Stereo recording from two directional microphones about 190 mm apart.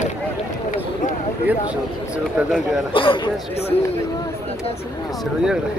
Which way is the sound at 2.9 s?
25° left (ahead or behind).